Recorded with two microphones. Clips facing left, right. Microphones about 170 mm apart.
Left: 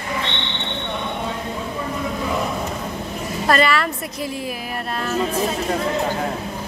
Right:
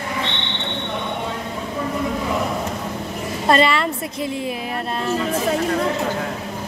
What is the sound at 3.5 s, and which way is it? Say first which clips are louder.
Speech: right 2 dB; 25° right (ahead or behind).